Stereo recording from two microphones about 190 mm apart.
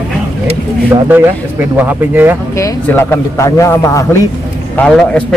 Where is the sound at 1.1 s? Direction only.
10° right (ahead or behind).